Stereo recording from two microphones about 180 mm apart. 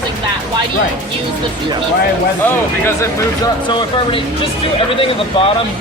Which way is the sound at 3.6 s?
30° left (ahead or behind).